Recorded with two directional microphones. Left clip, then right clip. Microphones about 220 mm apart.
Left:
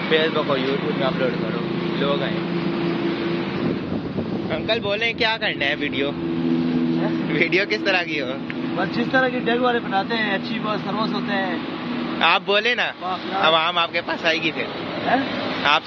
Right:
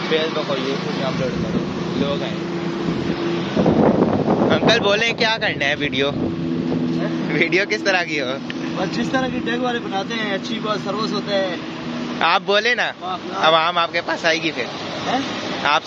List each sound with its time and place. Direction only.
4.5 s speech: 30° right (ahead or behind)
5.2 s speech: 10° right (ahead or behind)
7.3 s speech: 10° right (ahead or behind)
9.1 s speech: centre (ahead or behind)
12.2 s speech: 15° right (ahead or behind)